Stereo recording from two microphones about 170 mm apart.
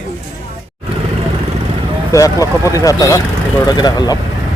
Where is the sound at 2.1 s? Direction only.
20° left (ahead or behind).